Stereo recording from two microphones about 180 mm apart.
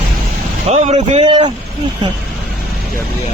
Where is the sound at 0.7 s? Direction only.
35° right (ahead or behind).